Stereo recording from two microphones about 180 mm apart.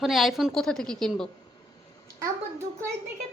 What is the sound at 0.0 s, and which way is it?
A woman's voice, centre (ahead or behind).